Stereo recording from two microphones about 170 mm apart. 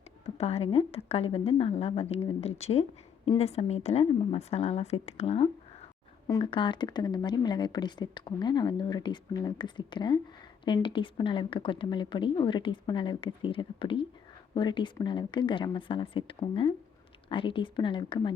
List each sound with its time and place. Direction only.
0.3 s a woman's voice: 35° left (ahead or behind)